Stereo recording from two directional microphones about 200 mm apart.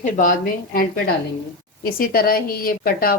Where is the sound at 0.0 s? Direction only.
40° left (ahead or behind).